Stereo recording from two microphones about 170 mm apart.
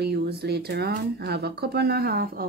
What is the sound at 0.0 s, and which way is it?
Speech, 75° right (ahead or behind).